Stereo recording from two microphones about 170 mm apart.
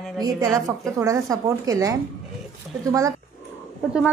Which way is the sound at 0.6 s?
20° right (ahead or behind).